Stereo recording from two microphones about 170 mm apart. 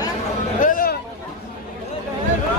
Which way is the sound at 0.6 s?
55° left (ahead or behind).